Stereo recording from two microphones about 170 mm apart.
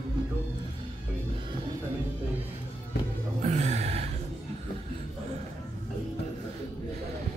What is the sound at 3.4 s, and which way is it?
Gasp, 40° right (ahead or behind).